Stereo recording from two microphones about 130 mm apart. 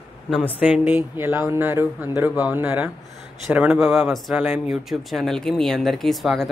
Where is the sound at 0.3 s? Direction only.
10° right (ahead or behind).